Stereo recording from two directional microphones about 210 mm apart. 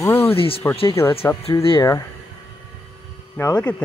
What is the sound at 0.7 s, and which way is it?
Speech, 10° left (ahead or behind).